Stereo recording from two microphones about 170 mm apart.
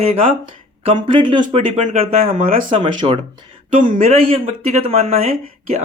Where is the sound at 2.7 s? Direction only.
35° right (ahead or behind).